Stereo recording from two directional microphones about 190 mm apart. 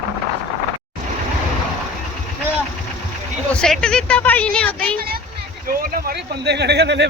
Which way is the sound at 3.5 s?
5° left (ahead or behind).